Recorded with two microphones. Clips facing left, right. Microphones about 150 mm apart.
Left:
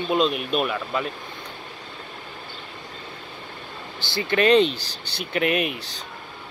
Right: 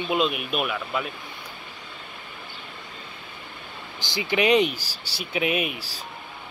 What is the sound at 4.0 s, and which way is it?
Speech, 15° right (ahead or behind).